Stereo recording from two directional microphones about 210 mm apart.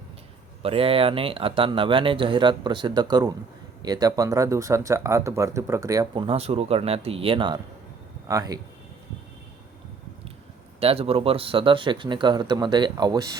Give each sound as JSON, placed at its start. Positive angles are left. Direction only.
{"t": 0.6, "sound": "speech", "side_deg": -25}
{"t": 10.8, "sound": "speech", "side_deg": -30}